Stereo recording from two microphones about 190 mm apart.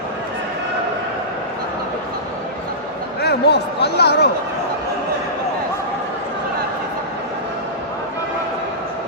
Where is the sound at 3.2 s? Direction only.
60° left (ahead or behind).